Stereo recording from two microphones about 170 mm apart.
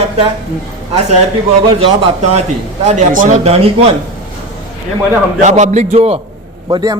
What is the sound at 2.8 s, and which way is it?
Speech, 45° right (ahead or behind).